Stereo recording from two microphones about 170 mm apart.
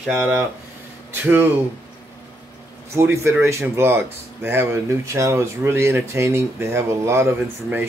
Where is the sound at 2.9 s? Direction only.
15° right (ahead or behind).